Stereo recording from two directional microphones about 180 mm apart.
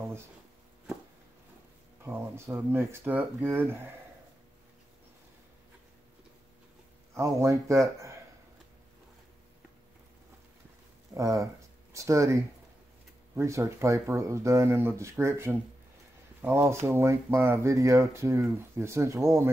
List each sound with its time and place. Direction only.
2.0 s speech: 15° right (ahead or behind)
7.2 s speech: 15° right (ahead or behind)
11.1 s speech: 20° right (ahead or behind)